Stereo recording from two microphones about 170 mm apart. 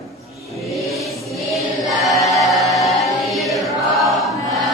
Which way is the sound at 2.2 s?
20° left (ahead or behind).